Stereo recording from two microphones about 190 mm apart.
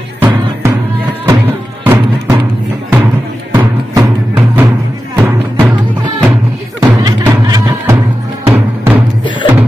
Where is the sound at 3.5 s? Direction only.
20° right (ahead or behind).